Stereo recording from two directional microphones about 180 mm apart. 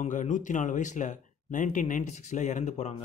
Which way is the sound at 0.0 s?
45° left (ahead or behind).